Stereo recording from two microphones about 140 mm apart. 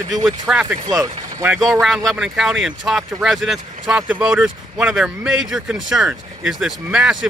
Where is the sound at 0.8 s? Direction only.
25° right (ahead or behind).